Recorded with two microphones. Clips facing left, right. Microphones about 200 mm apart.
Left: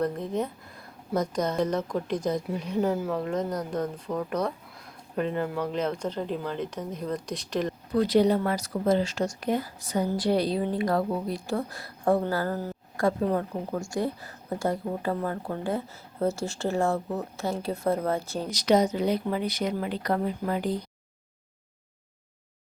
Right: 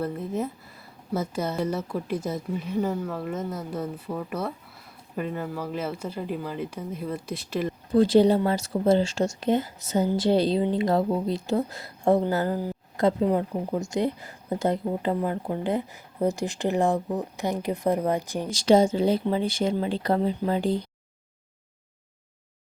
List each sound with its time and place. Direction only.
0.0 s speech: 5° right (ahead or behind)
7.9 s speech: 30° right (ahead or behind)
18.5 s speech: 30° right (ahead or behind)